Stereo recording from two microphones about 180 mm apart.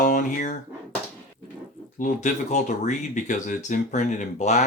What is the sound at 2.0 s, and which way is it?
Speech, 45° left (ahead or behind).